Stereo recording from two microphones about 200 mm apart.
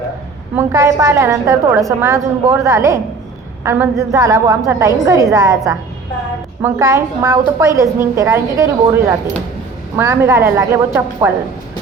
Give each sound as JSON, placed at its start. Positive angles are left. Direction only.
{"t": 0.5, "sound": "a woman's voice", "side_deg": -10}